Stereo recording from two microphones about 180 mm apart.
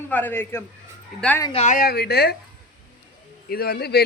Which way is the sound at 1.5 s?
35° left (ahead or behind).